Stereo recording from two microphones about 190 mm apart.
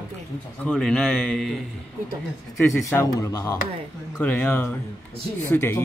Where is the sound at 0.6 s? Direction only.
5° left (ahead or behind).